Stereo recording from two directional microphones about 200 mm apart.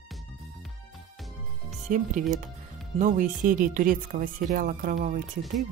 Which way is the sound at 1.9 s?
40° right (ahead or behind).